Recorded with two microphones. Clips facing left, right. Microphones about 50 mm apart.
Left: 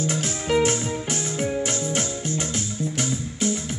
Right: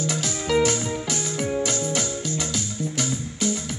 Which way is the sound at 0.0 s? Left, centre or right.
Left.